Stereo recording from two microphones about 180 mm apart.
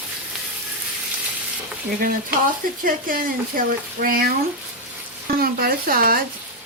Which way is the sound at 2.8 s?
50° right (ahead or behind).